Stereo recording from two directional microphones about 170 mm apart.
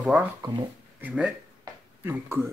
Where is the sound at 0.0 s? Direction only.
Centre (ahead or behind).